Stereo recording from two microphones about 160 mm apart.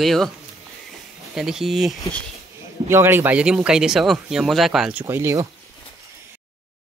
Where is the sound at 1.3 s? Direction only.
5° right (ahead or behind).